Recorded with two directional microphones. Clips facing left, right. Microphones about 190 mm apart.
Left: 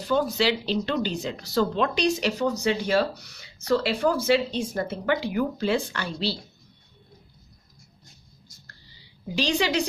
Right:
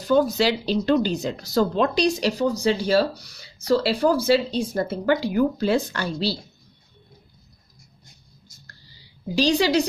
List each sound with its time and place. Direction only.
0.0 s speech: 40° right (ahead or behind)
9.3 s speech: 35° right (ahead or behind)